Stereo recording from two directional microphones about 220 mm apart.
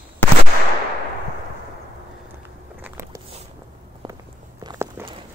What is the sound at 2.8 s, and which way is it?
Biting, 15° right (ahead or behind).